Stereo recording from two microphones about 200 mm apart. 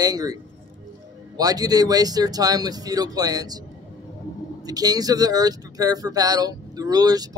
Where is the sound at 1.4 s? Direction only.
20° right (ahead or behind).